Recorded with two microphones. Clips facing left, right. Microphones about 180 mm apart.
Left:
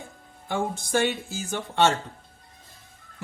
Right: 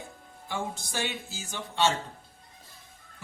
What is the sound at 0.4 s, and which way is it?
Speech, 55° left (ahead or behind).